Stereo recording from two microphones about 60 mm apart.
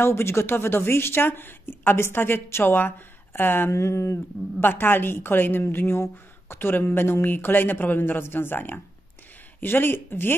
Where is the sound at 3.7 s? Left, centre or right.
Left.